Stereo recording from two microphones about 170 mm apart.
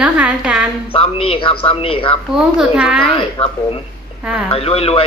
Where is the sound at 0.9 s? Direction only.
35° left (ahead or behind).